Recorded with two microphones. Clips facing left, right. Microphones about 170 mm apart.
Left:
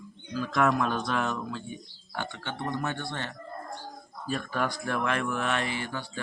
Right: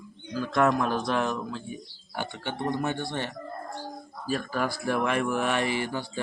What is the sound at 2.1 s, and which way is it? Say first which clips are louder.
Speech: right 2 dB; 15° right (ahead or behind).